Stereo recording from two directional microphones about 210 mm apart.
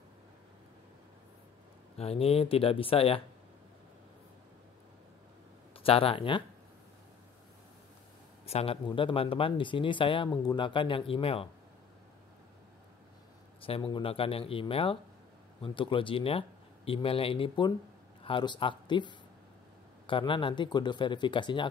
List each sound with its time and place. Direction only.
2.0 s speech: 30° left (ahead or behind)
5.8 s speech: 25° left (ahead or behind)
8.5 s speech: 30° left (ahead or behind)
13.6 s speech: 25° left (ahead or behind)